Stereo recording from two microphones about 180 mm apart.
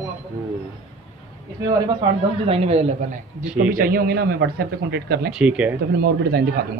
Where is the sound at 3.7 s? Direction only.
55° right (ahead or behind).